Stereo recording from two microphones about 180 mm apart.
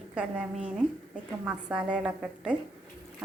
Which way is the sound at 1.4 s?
5° right (ahead or behind).